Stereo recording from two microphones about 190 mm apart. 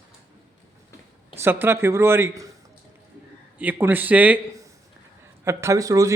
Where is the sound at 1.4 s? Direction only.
10° right (ahead or behind).